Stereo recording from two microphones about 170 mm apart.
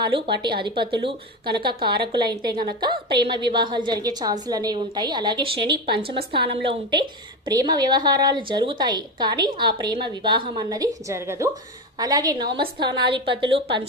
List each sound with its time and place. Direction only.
0.0 s a woman's voice: 25° right (ahead or behind)